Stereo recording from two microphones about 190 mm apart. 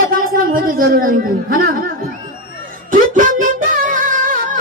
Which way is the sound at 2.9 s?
45° right (ahead or behind).